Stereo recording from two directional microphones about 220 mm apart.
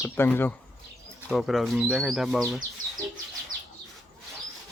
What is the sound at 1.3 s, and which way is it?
Speech, centre (ahead or behind).